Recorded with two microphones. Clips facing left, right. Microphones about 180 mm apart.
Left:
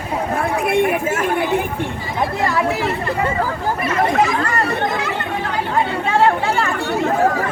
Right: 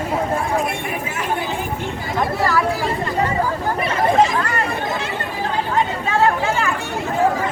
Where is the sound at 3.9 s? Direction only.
25° right (ahead or behind).